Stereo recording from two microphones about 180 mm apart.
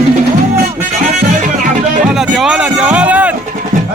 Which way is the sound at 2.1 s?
Centre (ahead or behind).